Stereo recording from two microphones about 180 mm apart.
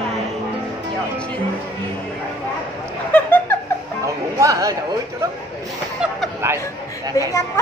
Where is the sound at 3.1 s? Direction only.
10° left (ahead or behind).